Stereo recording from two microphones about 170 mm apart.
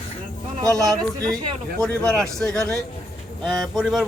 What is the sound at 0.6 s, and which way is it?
Speech, 20° right (ahead or behind).